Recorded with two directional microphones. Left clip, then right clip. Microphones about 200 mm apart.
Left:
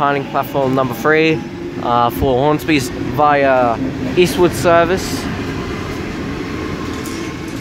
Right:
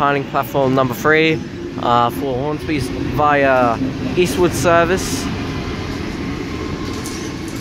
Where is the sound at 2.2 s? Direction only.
20° left (ahead or behind).